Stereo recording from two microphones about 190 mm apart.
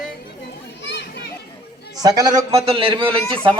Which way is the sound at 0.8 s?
65° left (ahead or behind).